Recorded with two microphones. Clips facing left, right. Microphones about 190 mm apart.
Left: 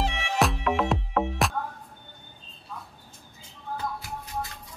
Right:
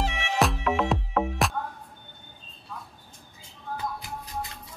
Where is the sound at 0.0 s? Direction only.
Centre (ahead or behind).